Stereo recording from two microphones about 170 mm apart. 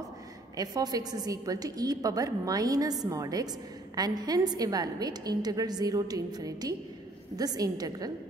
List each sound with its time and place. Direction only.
0.6 s a woman's voice: 20° right (ahead or behind)